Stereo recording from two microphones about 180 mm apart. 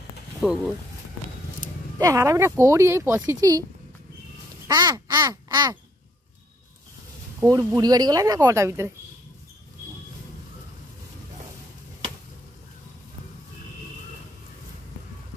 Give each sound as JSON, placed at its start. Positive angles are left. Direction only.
{"t": 0.4, "sound": "speech", "side_deg": 0}
{"t": 2.0, "sound": "speech", "side_deg": -20}
{"t": 4.6, "sound": "crow", "side_deg": -20}
{"t": 7.3, "sound": "speech", "side_deg": -20}